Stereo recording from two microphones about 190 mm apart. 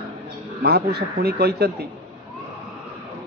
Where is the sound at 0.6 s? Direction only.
55° right (ahead or behind).